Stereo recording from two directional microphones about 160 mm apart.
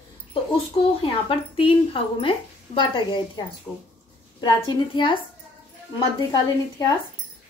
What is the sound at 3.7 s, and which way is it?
Speech, 5° left (ahead or behind).